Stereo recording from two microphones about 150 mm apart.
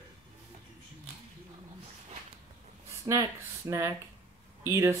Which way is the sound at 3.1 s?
25° right (ahead or behind).